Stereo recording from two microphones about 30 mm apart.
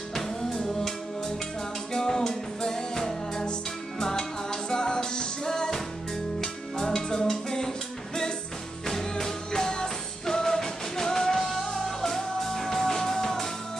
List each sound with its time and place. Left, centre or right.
0.1 s music: left
2.0 s music: centre
9.2 s music: left